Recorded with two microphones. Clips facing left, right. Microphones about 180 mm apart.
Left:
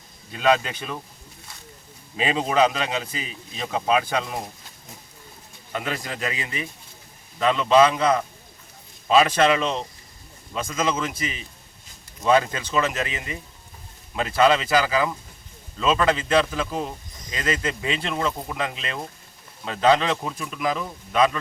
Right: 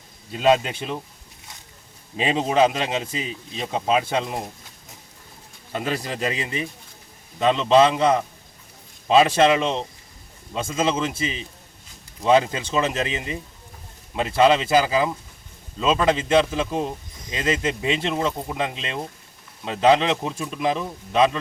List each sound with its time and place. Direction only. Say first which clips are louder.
0.4 s a man's voice: right 2 dB; 25° right (ahead or behind)
2.2 s a man's voice: right 2 dB; 25° right (ahead or behind)
5.7 s a man's voice: right 3 dB; 30° right (ahead or behind)